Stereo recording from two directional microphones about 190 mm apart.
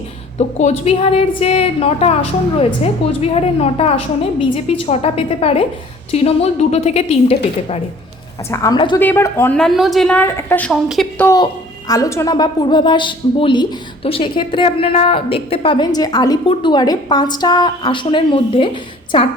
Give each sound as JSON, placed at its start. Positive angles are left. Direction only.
{"t": 0.3, "sound": "a woman's voice", "side_deg": 35}
{"t": 8.4, "sound": "a woman's voice", "side_deg": 15}
{"t": 9.0, "sound": "a woman's voice", "side_deg": 10}